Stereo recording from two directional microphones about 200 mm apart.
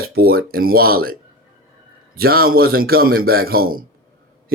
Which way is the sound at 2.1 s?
50° right (ahead or behind).